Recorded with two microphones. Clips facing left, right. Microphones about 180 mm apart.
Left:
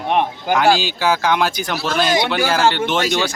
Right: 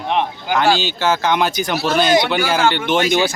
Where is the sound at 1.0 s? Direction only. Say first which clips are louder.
Even; centre (ahead or behind).